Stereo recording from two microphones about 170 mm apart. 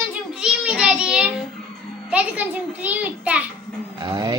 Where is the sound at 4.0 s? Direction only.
20° right (ahead or behind).